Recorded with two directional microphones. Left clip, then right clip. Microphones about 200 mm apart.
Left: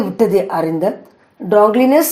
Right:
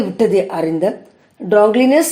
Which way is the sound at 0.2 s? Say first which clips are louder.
Left 1 dB; 15° left (ahead or behind).